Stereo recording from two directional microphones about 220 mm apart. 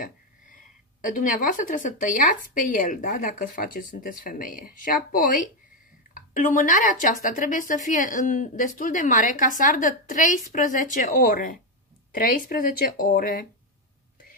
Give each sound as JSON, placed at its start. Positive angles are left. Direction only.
{"t": 1.0, "sound": "speech", "side_deg": 40}